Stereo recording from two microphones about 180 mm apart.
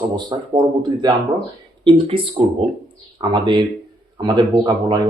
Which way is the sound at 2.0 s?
35° right (ahead or behind).